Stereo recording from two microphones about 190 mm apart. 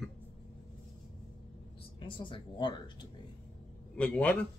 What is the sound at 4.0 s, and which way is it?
Speech, 5° left (ahead or behind).